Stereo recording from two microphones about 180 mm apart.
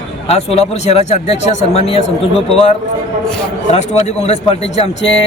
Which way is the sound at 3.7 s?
40° left (ahead or behind).